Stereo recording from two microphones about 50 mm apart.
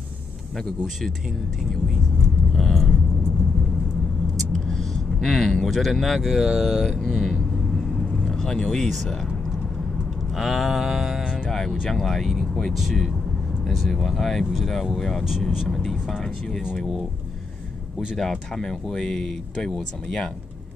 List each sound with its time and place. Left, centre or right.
2.5 s vehicle: centre
4.5 s vehicle: centre
6.2 s speech: centre
6.9 s speech: centre
10.3 s mantra: centre
11.9 s speech: centre
17.9 s speech: centre